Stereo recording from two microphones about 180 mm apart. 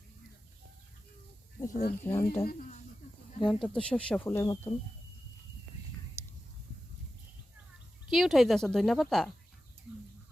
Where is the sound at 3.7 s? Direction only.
5° left (ahead or behind).